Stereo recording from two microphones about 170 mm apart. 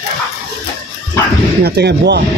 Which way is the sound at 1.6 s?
75° right (ahead or behind).